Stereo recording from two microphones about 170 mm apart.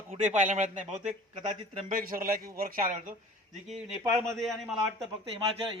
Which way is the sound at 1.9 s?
55° right (ahead or behind).